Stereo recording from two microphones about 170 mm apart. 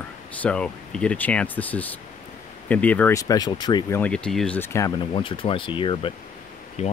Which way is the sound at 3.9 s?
5° left (ahead or behind).